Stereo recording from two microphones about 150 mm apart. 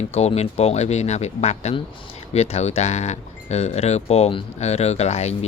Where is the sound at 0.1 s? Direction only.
45° left (ahead or behind).